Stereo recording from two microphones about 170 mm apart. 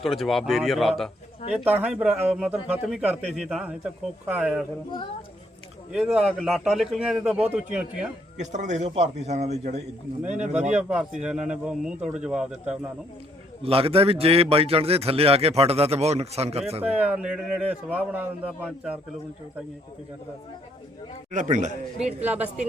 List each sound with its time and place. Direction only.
0.0 s a man's voice: centre (ahead or behind)
1.6 s a man's voice: 10° right (ahead or behind)
5.9 s a man's voice: 5° right (ahead or behind)
8.4 s a man's voice: 45° right (ahead or behind)
10.8 s a man's voice: 5° right (ahead or behind)
13.6 s a man's voice: 35° right (ahead or behind)
16.8 s a man's voice: 5° right (ahead or behind)
21.3 s speech: 45° right (ahead or behind)